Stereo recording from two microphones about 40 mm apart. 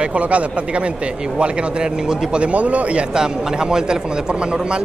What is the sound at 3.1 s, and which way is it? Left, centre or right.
Speech, centre.